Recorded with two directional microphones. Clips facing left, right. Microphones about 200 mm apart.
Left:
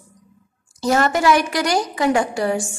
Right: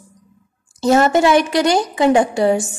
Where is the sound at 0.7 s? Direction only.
25° right (ahead or behind).